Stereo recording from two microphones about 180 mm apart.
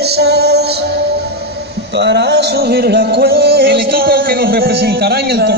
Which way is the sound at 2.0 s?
70° right (ahead or behind).